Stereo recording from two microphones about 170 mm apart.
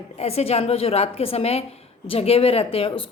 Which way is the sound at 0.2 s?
40° left (ahead or behind).